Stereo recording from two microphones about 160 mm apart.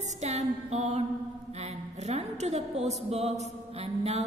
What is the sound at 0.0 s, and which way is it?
Music, 45° right (ahead or behind).